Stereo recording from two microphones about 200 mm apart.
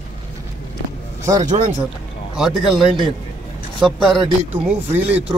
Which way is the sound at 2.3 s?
Centre (ahead or behind).